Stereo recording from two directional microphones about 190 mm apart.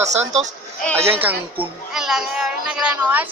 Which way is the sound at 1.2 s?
10° right (ahead or behind).